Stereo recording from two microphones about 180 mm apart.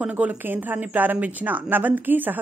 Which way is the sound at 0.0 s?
10° right (ahead or behind).